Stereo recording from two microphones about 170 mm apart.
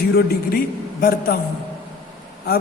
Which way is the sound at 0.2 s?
65° left (ahead or behind).